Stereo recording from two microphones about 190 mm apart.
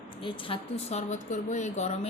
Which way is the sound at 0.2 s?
25° left (ahead or behind).